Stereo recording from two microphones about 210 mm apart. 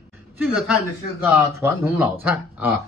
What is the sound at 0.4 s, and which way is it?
Speech, centre (ahead or behind).